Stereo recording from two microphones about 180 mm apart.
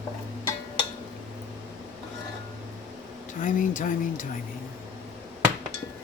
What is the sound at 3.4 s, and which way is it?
Speech, 45° left (ahead or behind).